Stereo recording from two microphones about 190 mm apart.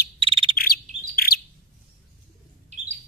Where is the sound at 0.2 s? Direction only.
30° right (ahead or behind).